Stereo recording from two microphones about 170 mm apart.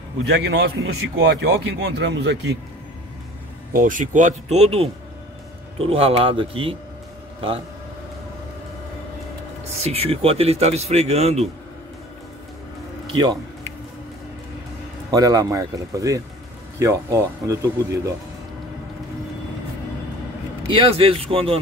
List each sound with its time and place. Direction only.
0.3 s a man's voice: 85° right
3.7 s speech: 50° right (ahead or behind); by 7.6 s 30° right (ahead or behind)
9.8 s speech: 35° right (ahead or behind)
13.0 s speech: 25° right (ahead or behind)
15.0 s speech: 20° right (ahead or behind)
20.7 s speech: 30° right (ahead or behind)